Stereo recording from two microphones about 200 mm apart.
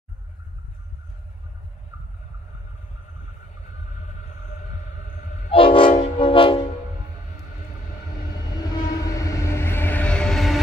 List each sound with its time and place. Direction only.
5.5 s train: 25° left (ahead or behind)
6.1 s train horn: 25° left (ahead or behind)
8.3 s train: 20° left (ahead or behind); by 10.6 s centre (ahead or behind)